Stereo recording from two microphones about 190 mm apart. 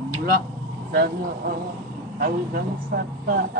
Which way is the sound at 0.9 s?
50° right (ahead or behind).